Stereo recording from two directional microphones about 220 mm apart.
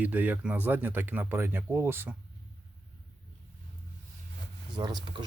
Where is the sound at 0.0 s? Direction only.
10° right (ahead or behind).